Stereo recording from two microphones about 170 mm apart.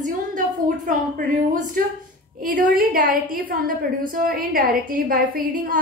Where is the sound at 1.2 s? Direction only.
50° right (ahead or behind).